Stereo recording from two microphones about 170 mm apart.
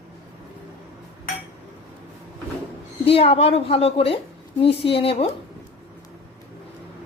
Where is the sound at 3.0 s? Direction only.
35° left (ahead or behind).